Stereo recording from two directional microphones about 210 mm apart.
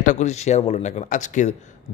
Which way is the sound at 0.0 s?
35° left (ahead or behind).